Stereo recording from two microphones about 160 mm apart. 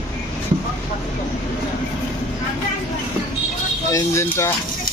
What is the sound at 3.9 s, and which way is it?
Speech, 15° left (ahead or behind).